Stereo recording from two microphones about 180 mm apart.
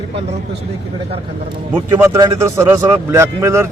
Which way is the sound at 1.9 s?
15° right (ahead or behind).